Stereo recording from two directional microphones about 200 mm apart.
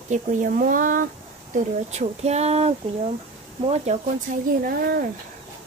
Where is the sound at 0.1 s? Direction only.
40° right (ahead or behind).